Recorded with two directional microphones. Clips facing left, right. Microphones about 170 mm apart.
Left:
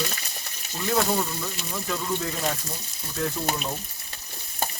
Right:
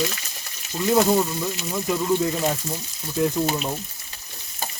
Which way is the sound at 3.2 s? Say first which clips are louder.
Right 7 dB; 15° right (ahead or behind).